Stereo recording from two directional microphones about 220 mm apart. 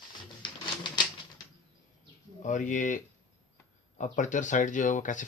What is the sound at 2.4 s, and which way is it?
Speech, 35° left (ahead or behind).